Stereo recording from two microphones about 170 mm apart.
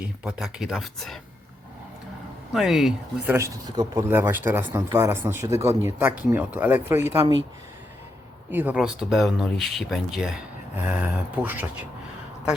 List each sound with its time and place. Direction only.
0.0 s speech: 5° right (ahead or behind)
2.5 s speech: centre (ahead or behind)
3.3 s speech: 20° right (ahead or behind)
8.4 s speech: 10° right (ahead or behind)